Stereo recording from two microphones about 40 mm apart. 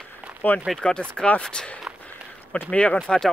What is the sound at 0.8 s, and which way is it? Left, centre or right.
Speech, centre.